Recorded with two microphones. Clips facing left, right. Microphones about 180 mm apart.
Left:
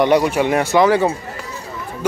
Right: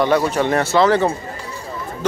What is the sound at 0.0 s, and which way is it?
Speech, 15° left (ahead or behind).